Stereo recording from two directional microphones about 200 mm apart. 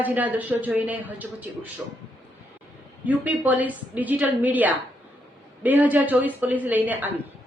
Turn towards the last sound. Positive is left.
turn(degrees=-10)  # may be behind; listen again after turning